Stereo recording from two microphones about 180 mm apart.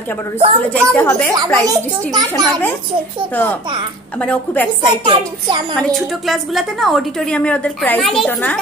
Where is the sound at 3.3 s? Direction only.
10° left (ahead or behind).